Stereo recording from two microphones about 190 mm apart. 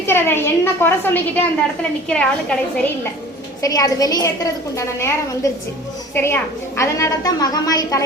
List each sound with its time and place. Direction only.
0.0 s a woman's voice: 10° left (ahead or behind)
3.6 s a woman's voice: 20° left (ahead or behind)